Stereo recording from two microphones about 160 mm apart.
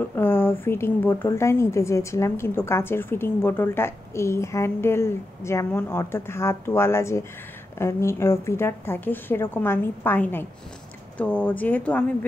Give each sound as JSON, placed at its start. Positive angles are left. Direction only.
{"t": 0.0, "sound": "speech", "side_deg": 15}